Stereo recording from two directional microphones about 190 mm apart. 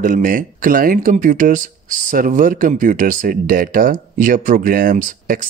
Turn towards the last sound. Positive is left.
turn(degrees=-45)  # may be behind; listen again after turning